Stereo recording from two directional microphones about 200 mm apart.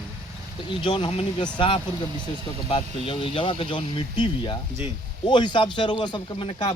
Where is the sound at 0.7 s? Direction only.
25° left (ahead or behind).